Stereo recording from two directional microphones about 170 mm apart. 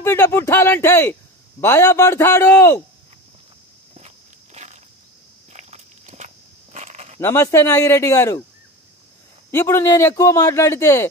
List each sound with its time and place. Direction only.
0.0 s speech: 15° left (ahead or behind)
5.5 s walk: 45° right (ahead or behind)
7.2 s speech: 15° left (ahead or behind)
9.5 s speech: 15° left (ahead or behind)